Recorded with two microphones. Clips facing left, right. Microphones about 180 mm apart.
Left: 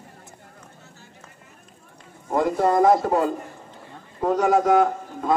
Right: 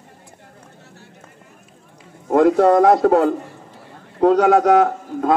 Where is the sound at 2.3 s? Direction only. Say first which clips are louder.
Right 8 dB; 65° right (ahead or behind).